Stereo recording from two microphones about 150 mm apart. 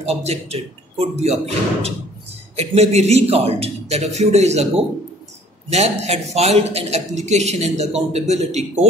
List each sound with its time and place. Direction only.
0.0 s a man's voice: 45° right (ahead or behind)
5.7 s a man's voice: 45° right (ahead or behind)